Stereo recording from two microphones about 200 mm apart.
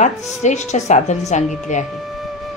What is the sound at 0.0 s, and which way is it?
A woman's voice, 35° left (ahead or behind).